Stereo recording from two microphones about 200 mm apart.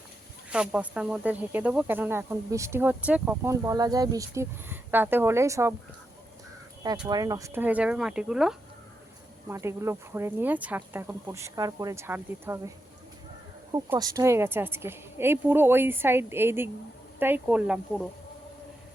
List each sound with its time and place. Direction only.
0.5 s speech: 5° right (ahead or behind)
7.1 s speech: 20° right (ahead or behind)
13.7 s speech: 15° right (ahead or behind)